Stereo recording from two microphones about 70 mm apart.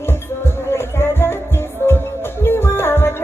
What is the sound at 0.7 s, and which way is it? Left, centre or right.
Music, left.